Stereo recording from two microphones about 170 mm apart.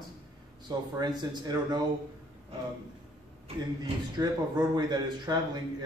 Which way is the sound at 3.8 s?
25° right (ahead or behind).